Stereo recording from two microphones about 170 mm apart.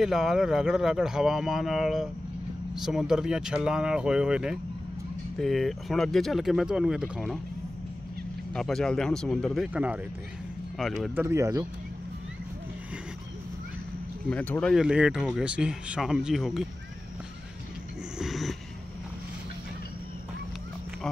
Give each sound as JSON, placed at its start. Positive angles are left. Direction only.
{"t": 0.0, "sound": "speech", "side_deg": 0}
{"t": 8.5, "sound": "speech", "side_deg": 5}
{"t": 11.1, "sound": "speech", "side_deg": -15}
{"t": 14.3, "sound": "speech", "side_deg": 10}
{"t": 18.2, "sound": "dog", "side_deg": 0}